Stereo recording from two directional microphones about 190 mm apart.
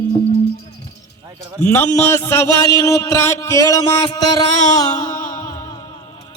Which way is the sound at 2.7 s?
15° left (ahead or behind).